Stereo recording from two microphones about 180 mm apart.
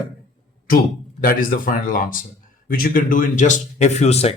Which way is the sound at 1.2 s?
50° left (ahead or behind).